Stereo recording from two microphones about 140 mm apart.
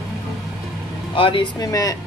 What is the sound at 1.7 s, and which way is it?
Speech, 25° left (ahead or behind).